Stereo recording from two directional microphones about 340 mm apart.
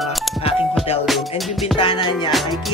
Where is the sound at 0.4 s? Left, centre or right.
Centre.